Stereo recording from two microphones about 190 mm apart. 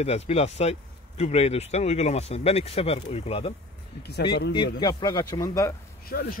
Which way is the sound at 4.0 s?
60° left (ahead or behind).